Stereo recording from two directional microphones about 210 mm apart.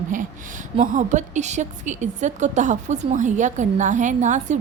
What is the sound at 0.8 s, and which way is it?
A woman's voice, 35° right (ahead or behind).